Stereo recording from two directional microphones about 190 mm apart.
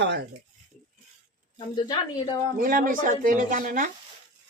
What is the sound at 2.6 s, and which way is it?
Speech, 45° right (ahead or behind).